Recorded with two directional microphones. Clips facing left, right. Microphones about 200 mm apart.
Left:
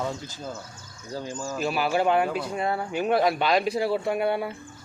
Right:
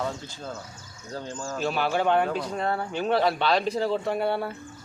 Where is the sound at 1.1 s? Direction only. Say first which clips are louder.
Left 2 dB; 10° left (ahead or behind).